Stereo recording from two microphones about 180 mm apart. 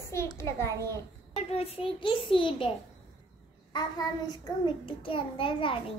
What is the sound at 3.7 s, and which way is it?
Child singing, 20° left (ahead or behind).